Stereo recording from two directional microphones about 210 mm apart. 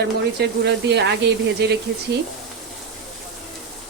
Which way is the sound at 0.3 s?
55° right (ahead or behind).